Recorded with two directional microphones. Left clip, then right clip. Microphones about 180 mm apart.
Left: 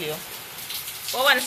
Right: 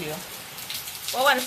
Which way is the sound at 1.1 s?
Centre (ahead or behind).